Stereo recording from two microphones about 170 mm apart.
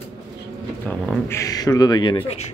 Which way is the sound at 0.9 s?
10° left (ahead or behind).